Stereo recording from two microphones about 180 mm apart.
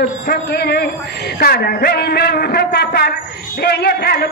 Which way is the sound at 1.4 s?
60° left (ahead or behind).